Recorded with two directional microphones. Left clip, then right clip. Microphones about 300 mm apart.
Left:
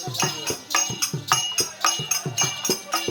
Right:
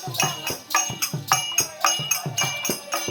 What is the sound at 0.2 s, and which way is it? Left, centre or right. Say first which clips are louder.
Music: right 1 dB; centre.